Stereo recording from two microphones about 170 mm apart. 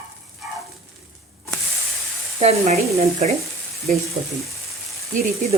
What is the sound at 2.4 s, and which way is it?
Sizzle, 40° right (ahead or behind).